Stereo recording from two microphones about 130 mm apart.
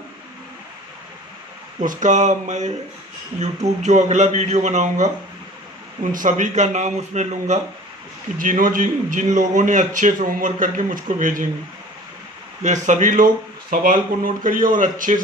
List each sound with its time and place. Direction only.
1.8 s a man's voice: 70° right (ahead or behind)
6.1 s a man's voice: 80° right; by 7.6 s 60° right (ahead or behind)
8.4 s a man's voice: 90° right
12.6 s a man's voice: 65° right (ahead or behind); by 15.1 s 90° right